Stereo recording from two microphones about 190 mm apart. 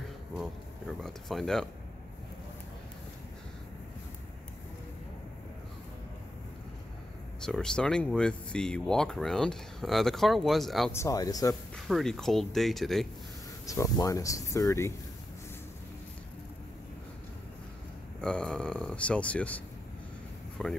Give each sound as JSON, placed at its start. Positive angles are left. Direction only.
{"t": 0.4, "sound": "speech", "side_deg": 0}
{"t": 7.4, "sound": "speech", "side_deg": 5}
{"t": 10.9, "sound": "speech", "side_deg": 15}
{"t": 11.7, "sound": "speech", "side_deg": 0}
{"t": 13.7, "sound": "speech", "side_deg": 15}
{"t": 18.2, "sound": "speech", "side_deg": 5}